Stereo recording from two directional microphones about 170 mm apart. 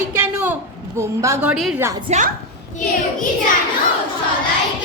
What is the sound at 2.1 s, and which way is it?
Speech, 40° right (ahead or behind).